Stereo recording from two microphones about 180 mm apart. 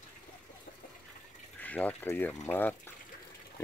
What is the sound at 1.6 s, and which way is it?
Speech, 10° left (ahead or behind).